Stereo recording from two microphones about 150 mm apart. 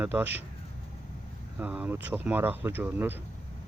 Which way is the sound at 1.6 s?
10° right (ahead or behind).